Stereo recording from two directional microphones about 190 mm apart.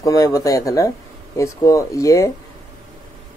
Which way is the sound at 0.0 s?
20° left (ahead or behind).